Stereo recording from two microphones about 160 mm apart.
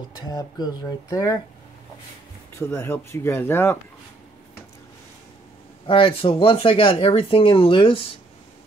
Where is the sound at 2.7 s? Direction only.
15° left (ahead or behind).